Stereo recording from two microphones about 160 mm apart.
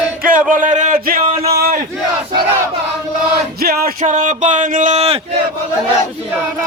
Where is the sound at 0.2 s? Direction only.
60° right (ahead or behind).